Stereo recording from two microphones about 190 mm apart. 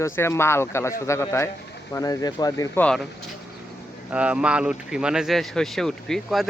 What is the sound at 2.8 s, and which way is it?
Speech, centre (ahead or behind).